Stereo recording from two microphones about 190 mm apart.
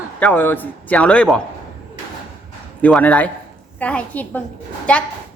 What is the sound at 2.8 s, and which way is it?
A woman's voice, 5° left (ahead or behind).